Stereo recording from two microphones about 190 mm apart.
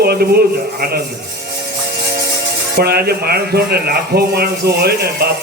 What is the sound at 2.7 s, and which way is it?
A man's voice, 55° right (ahead or behind).